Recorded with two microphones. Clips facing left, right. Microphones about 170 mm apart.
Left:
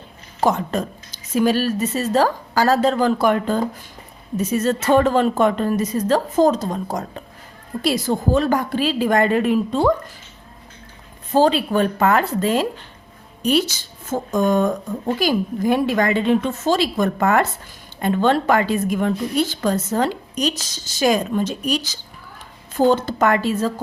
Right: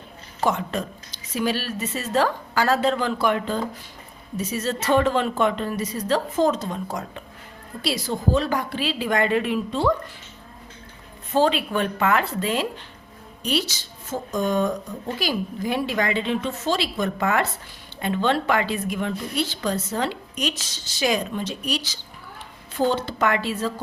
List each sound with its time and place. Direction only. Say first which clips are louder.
0.4 s a woman's voice: left 4 dB; 40° left (ahead or behind)
11.3 s a woman's voice: left 4 dB; 35° left (ahead or behind)